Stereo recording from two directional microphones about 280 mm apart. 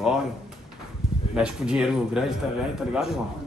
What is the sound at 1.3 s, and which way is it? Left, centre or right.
A man's voice, centre.